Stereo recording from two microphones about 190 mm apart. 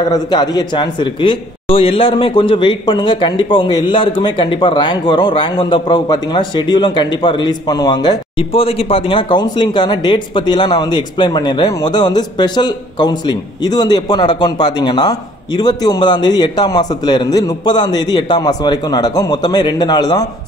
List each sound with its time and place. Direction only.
0.1 s a man's voice: 20° left (ahead or behind)